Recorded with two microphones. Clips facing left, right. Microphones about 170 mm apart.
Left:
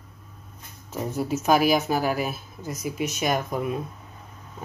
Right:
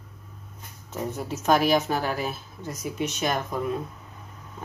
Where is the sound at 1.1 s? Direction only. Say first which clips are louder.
Left 2 dB; 5° left (ahead or behind).